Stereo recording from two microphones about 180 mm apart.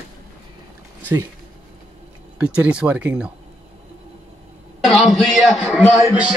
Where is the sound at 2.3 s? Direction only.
5° right (ahead or behind).